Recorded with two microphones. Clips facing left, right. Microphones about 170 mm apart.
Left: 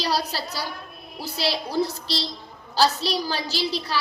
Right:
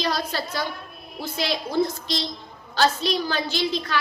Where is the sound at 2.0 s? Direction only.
35° left (ahead or behind).